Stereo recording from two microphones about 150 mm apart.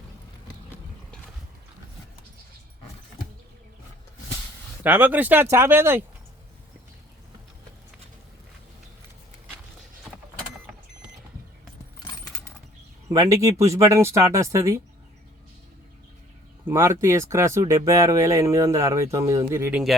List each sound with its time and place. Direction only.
4.8 s speech: 10° right (ahead or behind)
13.1 s speech: 20° right (ahead or behind)
16.6 s speech: 15° right (ahead or behind)